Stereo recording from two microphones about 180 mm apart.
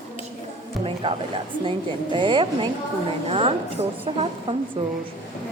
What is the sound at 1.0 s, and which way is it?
A woman's voice, 30° right (ahead or behind).